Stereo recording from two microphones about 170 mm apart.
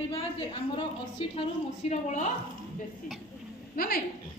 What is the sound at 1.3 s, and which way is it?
Speech, 40° left (ahead or behind).